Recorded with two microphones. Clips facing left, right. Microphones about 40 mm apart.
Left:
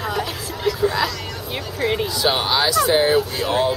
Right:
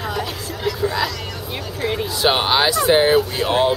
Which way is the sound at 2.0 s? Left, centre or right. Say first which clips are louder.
Right 2 dB; right.